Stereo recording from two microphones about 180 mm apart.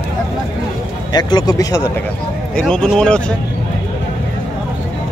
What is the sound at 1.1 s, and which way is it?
Speech, 20° left (ahead or behind).